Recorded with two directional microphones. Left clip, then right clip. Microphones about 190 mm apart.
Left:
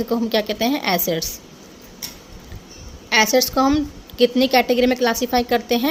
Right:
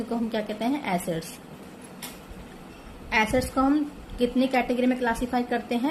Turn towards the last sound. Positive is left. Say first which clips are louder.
# left 8 dB
turn(degrees=50)  # may be behind; listen again after turning